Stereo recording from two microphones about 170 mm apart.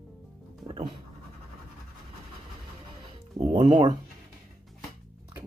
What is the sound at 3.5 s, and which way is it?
Music, 30° right (ahead or behind).